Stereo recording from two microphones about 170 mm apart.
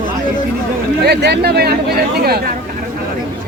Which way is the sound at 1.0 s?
75° right (ahead or behind).